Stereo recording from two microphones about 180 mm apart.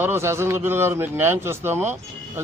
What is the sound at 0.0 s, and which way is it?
A man's voice, 15° right (ahead or behind).